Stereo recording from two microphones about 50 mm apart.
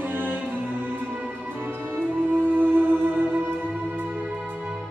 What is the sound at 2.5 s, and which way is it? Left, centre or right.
Music, right.